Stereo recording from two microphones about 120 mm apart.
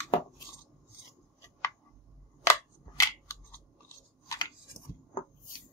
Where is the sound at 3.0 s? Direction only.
25° left (ahead or behind).